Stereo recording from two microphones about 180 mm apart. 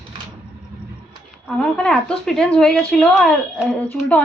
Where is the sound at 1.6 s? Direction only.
5° left (ahead or behind).